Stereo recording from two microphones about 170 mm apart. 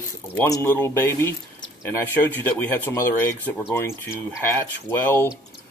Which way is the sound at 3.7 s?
15° left (ahead or behind).